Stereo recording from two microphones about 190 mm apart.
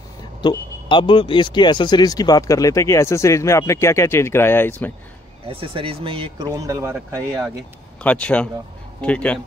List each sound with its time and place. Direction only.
0.4 s speech: 25° left (ahead or behind)
5.5 s speech: 30° right (ahead or behind)
8.0 s speech: 5° left (ahead or behind)